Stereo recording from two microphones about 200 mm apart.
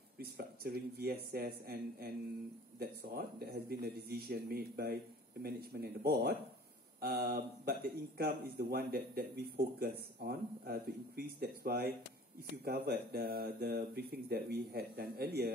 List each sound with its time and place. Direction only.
0.2 s speech: 50° right (ahead or behind)